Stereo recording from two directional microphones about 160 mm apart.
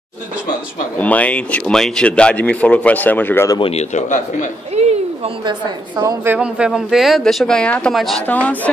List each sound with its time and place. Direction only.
0.9 s speech: 10° left (ahead or behind)
3.5 s speech: 35° left (ahead or behind)
3.9 s a man's voice: 50° left (ahead or behind)
4.7 s a woman's voice: 35° right (ahead or behind)
6.3 s speech: 5° right (ahead or behind); by 8.5 s 10° left (ahead or behind)